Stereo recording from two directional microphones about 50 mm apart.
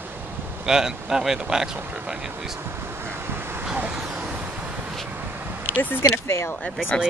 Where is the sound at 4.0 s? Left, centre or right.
Centre.